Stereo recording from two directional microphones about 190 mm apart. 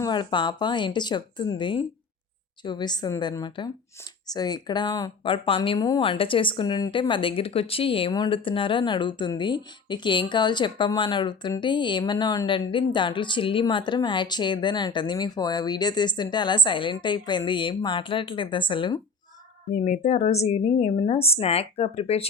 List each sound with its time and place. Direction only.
0.0 s speech: 25° left (ahead or behind)
19.7 s a woman's voice: 35° left (ahead or behind)